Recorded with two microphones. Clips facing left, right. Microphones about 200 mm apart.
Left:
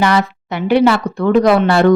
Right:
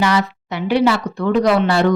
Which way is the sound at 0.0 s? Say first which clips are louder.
Left 3 dB; 55° left (ahead or behind).